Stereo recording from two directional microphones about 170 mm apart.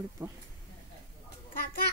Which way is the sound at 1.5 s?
60° left (ahead or behind).